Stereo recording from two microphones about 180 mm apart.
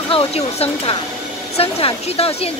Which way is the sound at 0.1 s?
30° left (ahead or behind).